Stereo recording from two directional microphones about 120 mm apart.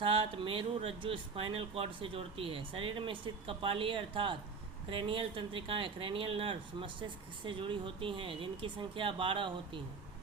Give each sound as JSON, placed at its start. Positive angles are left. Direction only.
{"t": 0.0, "sound": "speech", "side_deg": -50}